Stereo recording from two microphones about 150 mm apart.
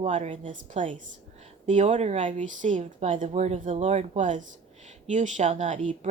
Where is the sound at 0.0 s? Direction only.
55° right (ahead or behind).